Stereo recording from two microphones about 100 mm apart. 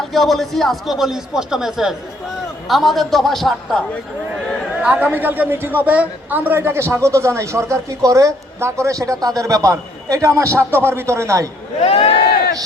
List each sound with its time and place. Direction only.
0.0 s a man's voice: centre (ahead or behind)
4.8 s a man's voice: 15° right (ahead or behind); by 11.4 s 30° right (ahead or behind)
11.8 s speech: 70° left (ahead or behind)